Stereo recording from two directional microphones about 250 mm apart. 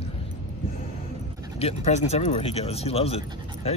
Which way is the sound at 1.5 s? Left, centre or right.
Left.